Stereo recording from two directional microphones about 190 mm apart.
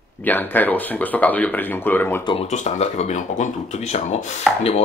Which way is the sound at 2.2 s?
30° left (ahead or behind).